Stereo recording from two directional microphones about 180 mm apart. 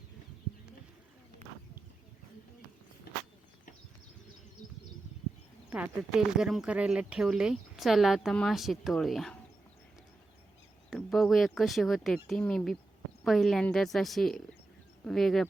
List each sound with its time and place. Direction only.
1.4 s a sound: 40° right (ahead or behind)
5.7 s speech: 5° right (ahead or behind)
10.9 s speech: centre (ahead or behind)